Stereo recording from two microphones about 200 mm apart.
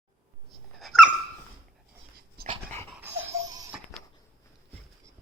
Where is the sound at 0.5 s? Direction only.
Centre (ahead or behind).